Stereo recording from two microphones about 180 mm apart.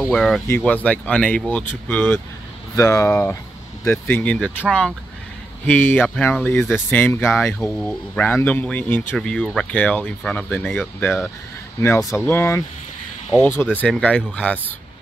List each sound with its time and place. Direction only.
0.0 s speech: centre (ahead or behind)